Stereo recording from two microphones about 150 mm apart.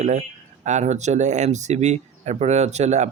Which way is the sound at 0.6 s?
50° right (ahead or behind).